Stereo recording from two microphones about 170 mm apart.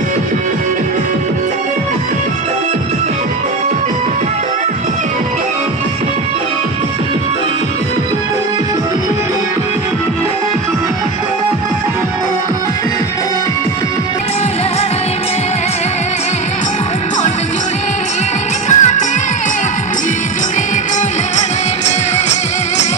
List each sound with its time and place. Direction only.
18.7 s music: 45° left (ahead or behind)